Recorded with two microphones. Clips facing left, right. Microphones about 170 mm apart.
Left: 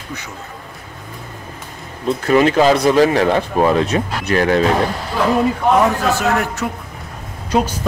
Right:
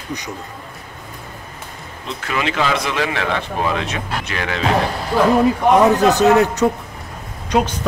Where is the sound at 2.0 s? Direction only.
45° left (ahead or behind).